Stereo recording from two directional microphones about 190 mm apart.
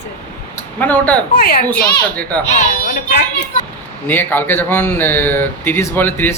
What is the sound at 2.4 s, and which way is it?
Speech, 40° left (ahead or behind).